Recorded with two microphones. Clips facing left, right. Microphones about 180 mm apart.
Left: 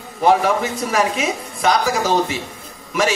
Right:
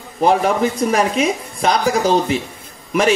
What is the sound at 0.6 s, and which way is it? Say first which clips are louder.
A man's voice: right 3 dB; 35° right (ahead or behind).